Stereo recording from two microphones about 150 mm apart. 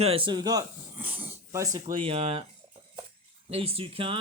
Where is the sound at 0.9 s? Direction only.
10° right (ahead or behind).